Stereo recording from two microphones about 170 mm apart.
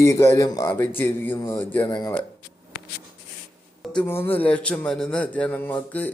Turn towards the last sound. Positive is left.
turn(degrees=10)  # may be behind; listen again after turning